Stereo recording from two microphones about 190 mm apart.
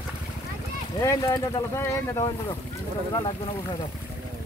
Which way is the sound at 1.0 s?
15° left (ahead or behind).